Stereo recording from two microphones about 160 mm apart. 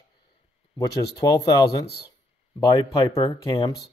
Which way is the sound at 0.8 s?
25° left (ahead or behind).